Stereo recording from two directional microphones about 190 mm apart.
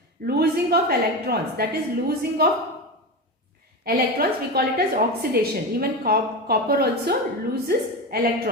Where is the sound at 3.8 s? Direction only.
50° right (ahead or behind).